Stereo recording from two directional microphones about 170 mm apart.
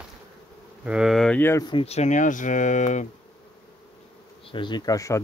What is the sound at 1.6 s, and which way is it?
Speech, 35° left (ahead or behind).